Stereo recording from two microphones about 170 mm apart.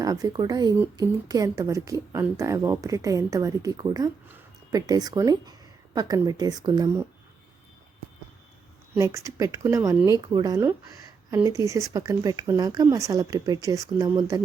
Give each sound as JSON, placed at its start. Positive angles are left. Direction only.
{"t": 0.0, "sound": "a woman's voice", "side_deg": -20}
{"t": 9.0, "sound": "a woman's voice", "side_deg": -20}